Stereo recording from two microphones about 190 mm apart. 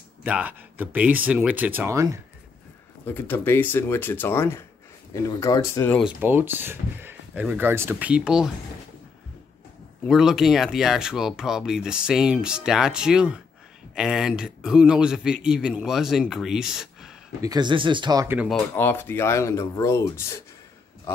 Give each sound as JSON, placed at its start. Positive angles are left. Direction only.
{"t": 0.2, "sound": "speech", "side_deg": -10}
{"t": 3.1, "sound": "speech", "side_deg": 10}
{"t": 6.2, "sound": "speech", "side_deg": -10}
{"t": 10.0, "sound": "speech", "side_deg": 0}
{"t": 17.4, "sound": "speech", "side_deg": -20}
{"t": 18.5, "sound": "speech", "side_deg": 10}